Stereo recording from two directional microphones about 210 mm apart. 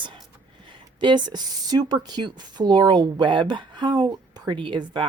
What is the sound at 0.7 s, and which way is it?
Speech, 20° right (ahead or behind).